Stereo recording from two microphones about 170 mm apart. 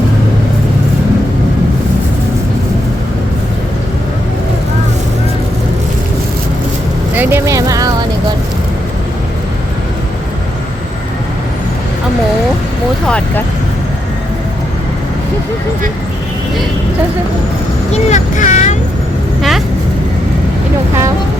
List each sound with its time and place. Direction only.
7.2 s speech: 15° right (ahead or behind)
13.1 s speech: 5° left (ahead or behind)
17.9 s vehicle: 45° left (ahead or behind)
19.4 s vehicle: centre (ahead or behind)